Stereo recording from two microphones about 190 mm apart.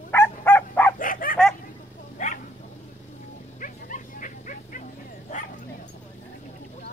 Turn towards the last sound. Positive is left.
turn(degrees=40)  # may be behind; listen again after turning